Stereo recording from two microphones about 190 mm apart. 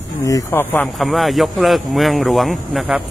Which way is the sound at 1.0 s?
Centre (ahead or behind).